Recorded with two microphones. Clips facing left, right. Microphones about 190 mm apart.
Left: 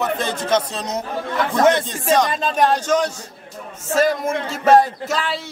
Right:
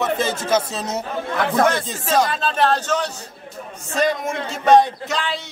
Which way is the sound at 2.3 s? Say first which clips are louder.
Left 1 dB; 15° left (ahead or behind).